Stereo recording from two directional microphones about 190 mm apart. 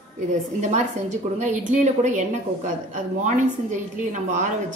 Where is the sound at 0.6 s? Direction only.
40° right (ahead or behind).